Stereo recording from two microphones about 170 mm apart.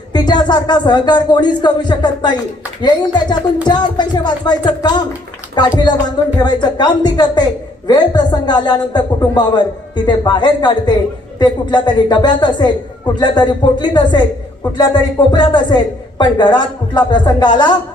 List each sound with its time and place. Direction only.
0.1 s speech: 25° left (ahead or behind)
6.4 s speech: 25° left (ahead or behind)